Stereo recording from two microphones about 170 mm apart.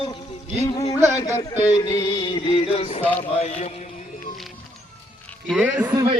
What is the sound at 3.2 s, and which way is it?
Speech, 40° left (ahead or behind).